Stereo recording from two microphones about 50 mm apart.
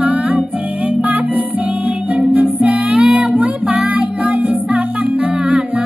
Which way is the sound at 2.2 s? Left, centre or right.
Right.